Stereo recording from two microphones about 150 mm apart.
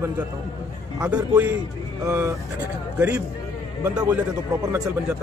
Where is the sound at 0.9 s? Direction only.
10° right (ahead or behind).